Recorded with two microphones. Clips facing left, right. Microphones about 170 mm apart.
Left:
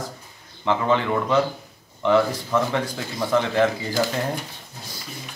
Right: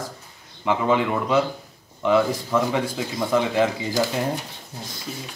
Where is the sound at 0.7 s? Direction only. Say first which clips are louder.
Even; 10° right (ahead or behind).